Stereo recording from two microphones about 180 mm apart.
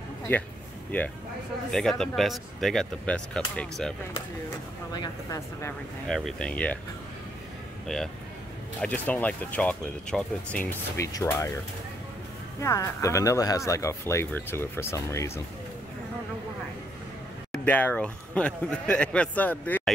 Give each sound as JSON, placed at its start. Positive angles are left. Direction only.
{"t": 0.3, "sound": "speech", "side_deg": 10}
{"t": 1.7, "sound": "speech", "side_deg": 5}
{"t": 4.9, "sound": "speech", "side_deg": 20}
{"t": 6.0, "sound": "speech", "side_deg": 0}
{"t": 7.8, "sound": "speech", "side_deg": 0}
{"t": 12.5, "sound": "speech", "side_deg": 15}
{"t": 17.5, "sound": "speech", "side_deg": 10}